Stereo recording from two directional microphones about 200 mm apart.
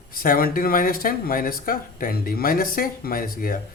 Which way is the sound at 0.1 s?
45° left (ahead or behind).